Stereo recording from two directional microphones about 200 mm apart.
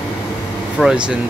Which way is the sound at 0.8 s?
5° right (ahead or behind).